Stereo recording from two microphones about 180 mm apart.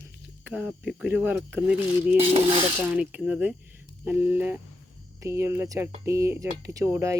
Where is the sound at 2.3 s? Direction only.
30° right (ahead or behind).